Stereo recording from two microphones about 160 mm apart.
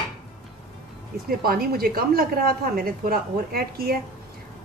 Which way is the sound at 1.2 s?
70° right (ahead or behind).